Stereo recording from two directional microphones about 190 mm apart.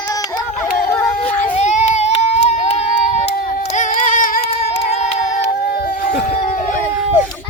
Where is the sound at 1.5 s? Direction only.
35° left (ahead or behind).